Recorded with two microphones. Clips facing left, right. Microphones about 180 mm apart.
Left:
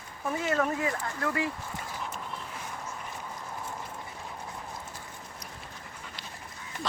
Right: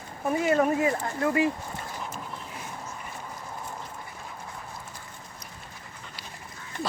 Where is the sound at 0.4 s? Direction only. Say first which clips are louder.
Right 6 dB; 20° right (ahead or behind).